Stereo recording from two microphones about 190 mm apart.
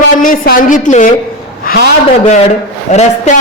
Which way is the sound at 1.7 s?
50° left (ahead or behind).